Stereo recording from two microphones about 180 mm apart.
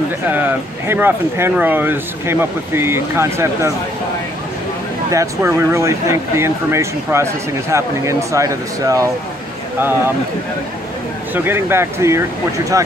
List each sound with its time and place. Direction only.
0.3 s speech: 10° right (ahead or behind)
5.1 s speech: 15° right (ahead or behind)
11.3 s speech: 10° right (ahead or behind)